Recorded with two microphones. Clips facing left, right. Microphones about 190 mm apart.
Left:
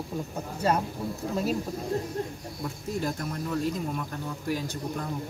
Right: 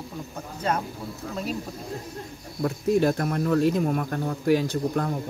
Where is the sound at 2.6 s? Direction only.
70° right (ahead or behind).